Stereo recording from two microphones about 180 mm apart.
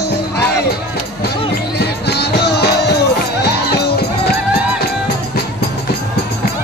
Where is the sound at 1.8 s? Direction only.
65° left (ahead or behind).